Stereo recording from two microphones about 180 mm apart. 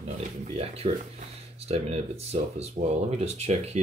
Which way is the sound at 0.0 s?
35° right (ahead or behind).